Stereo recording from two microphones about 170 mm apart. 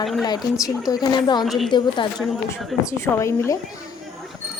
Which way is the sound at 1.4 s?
Centre (ahead or behind).